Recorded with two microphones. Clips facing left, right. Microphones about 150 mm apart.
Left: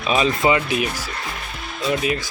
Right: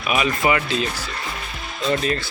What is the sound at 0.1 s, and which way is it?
Speech, 25° left (ahead or behind).